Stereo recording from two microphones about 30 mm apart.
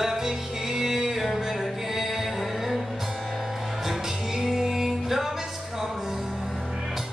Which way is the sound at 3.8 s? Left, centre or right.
Centre.